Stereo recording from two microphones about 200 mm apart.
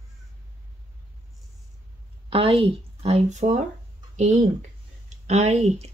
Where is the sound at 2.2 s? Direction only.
25° right (ahead or behind).